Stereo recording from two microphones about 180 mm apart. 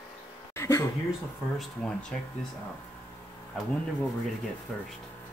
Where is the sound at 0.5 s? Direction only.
15° left (ahead or behind).